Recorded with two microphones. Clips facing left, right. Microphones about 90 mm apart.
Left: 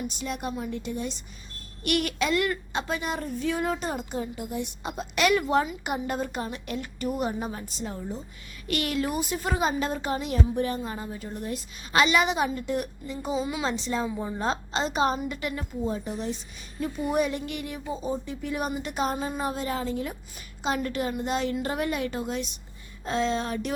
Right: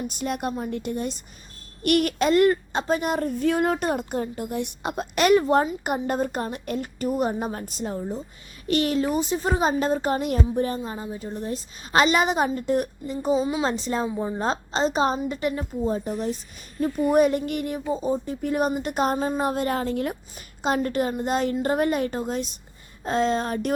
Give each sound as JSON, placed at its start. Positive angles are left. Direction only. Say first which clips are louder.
{"t": 0.1, "sound": "speech", "louder": "right 4 dB", "side_deg": -50}
{"t": 5.1, "sound": "a woman's voice", "louder": "right 4 dB", "side_deg": -40}
{"t": 10.5, "sound": "a woman's voice", "louder": "right 3 dB", "side_deg": -35}
{"t": 10.8, "sound": "a woman's voice", "louder": "right 2 dB", "side_deg": -20}
{"t": 14.2, "sound": "a woman's voice", "louder": "right 3 dB", "side_deg": -30}
{"t": 20.6, "sound": "a woman's voice", "louder": "right 5 dB", "side_deg": -45}